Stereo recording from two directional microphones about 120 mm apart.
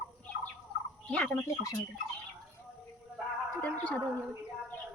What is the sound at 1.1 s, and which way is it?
Bird, 15° left (ahead or behind).